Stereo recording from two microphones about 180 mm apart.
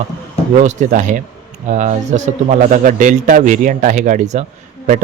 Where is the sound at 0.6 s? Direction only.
40° right (ahead or behind).